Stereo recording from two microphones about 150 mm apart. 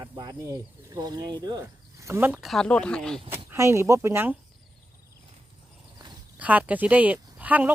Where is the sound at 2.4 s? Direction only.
Centre (ahead or behind).